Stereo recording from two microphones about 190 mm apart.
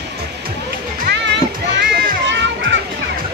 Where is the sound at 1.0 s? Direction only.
65° right (ahead or behind).